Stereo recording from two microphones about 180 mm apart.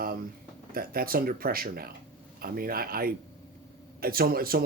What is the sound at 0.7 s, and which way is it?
Speech, 55° right (ahead or behind).